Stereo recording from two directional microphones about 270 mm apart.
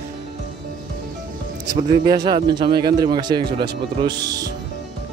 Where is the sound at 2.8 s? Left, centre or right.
Centre.